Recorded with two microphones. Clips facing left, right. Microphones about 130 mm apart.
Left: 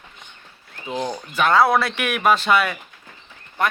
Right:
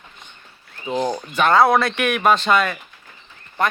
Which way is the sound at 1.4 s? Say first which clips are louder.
Right 2 dB; 5° left (ahead or behind).